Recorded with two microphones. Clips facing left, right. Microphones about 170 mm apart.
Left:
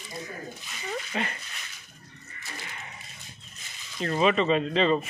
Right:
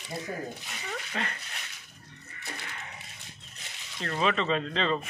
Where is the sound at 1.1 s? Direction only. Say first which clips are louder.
Left 2 dB; 5° left (ahead or behind).